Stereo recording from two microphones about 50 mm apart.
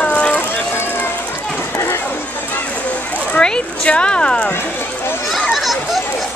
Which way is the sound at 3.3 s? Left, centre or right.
Centre.